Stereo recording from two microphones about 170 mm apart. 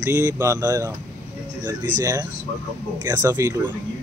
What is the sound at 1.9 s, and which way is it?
Speech, 50° right (ahead or behind).